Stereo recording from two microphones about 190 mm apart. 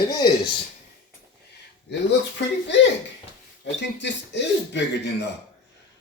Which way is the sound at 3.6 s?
65° left (ahead or behind).